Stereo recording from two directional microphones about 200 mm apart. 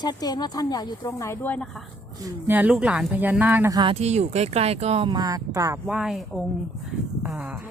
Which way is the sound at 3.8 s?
30° right (ahead or behind).